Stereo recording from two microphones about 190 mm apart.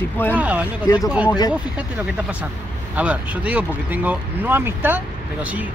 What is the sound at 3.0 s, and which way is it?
Speech, 5° right (ahead or behind).